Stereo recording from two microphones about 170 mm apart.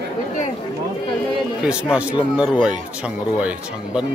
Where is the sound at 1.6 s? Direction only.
5° right (ahead or behind).